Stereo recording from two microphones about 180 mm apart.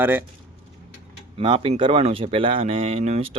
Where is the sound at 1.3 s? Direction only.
30° right (ahead or behind).